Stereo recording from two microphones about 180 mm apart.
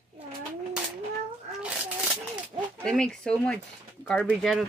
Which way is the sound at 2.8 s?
5° left (ahead or behind).